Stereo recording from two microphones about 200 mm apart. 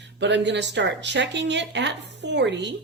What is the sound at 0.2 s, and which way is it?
A woman's voice, 60° right (ahead or behind).